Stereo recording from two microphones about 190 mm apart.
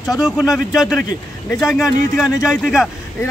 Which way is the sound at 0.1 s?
20° left (ahead or behind).